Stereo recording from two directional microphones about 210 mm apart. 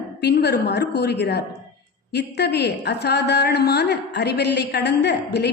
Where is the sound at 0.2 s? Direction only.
50° left (ahead or behind).